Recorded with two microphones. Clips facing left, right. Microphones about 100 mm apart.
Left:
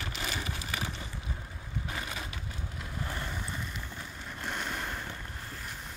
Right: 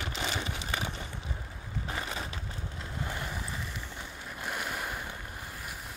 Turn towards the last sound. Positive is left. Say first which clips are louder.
# even
turn(degrees=-10)  # may be behind; listen again after turning